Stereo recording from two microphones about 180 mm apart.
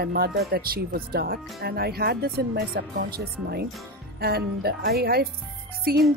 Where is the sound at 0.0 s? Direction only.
60° right (ahead or behind).